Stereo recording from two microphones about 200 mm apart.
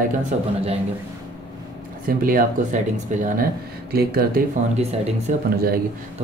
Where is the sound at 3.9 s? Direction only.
50° right (ahead or behind).